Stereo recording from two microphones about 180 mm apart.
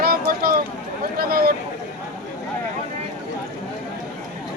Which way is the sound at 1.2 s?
55° right (ahead or behind).